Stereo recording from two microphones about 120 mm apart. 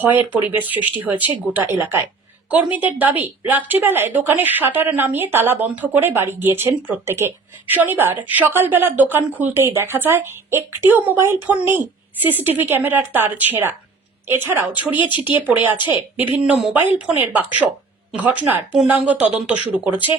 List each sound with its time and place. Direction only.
0.0 s a woman's voice: 15° right (ahead or behind)